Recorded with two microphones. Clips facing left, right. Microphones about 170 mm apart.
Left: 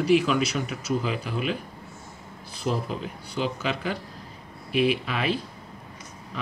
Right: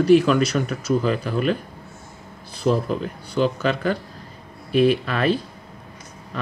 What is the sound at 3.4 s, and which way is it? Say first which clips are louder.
Speech: right 7 dB; 60° right (ahead or behind).